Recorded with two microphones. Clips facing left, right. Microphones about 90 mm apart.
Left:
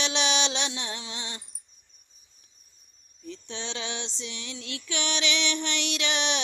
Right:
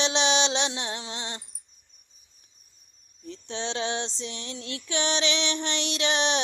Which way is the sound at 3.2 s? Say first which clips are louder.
Right 4 dB; 30° right (ahead or behind).